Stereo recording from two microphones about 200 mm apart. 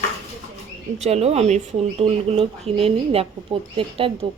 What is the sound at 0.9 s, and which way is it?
Speech, 30° right (ahead or behind).